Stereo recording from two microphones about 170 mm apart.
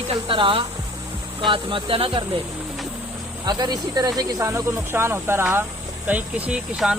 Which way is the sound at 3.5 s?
25° right (ahead or behind).